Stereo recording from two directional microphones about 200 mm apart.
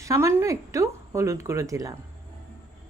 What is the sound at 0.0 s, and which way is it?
Speech, 15° right (ahead or behind).